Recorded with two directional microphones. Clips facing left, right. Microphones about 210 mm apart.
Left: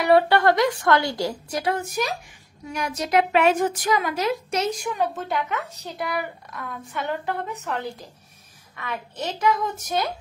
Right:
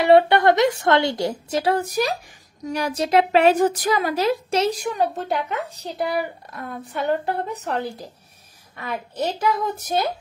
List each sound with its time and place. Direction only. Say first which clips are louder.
0.0 s a woman's voice: right 3 dB; 25° right (ahead or behind)